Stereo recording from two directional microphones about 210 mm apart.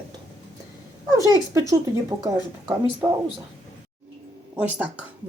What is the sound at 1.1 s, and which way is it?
Speech, 15° right (ahead or behind).